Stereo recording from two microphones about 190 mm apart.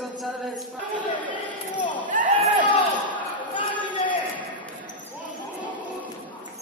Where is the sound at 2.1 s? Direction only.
45° right (ahead or behind).